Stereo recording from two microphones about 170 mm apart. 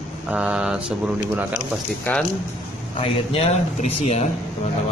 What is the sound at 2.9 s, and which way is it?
Speech, 35° left (ahead or behind).